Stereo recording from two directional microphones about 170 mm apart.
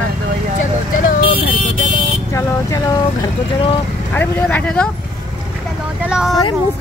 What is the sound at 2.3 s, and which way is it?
Speech, 20° left (ahead or behind).